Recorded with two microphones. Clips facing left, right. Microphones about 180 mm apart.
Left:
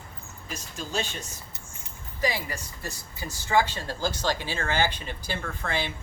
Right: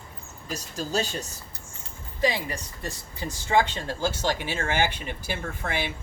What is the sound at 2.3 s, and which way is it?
Speech, 25° right (ahead or behind).